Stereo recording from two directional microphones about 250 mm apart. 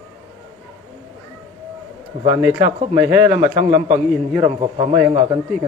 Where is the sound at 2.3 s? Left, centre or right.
Centre.